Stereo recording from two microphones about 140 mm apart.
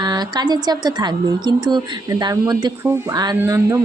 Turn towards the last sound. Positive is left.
turn(degrees=-20)  # may be behind; listen again after turning